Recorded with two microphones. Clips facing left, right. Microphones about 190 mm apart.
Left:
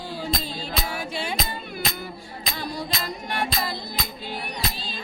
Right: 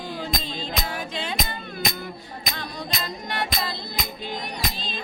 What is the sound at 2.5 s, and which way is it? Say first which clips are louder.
Music: left 4 dB; 10° left (ahead or behind).